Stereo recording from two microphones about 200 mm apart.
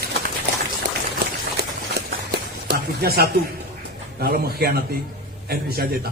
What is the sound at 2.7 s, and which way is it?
A man's voice, 50° right (ahead or behind).